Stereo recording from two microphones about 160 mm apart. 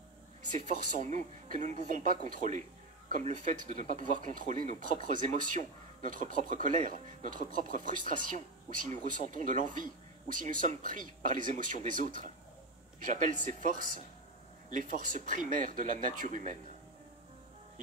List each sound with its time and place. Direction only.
0.5 s speech: 50° right (ahead or behind)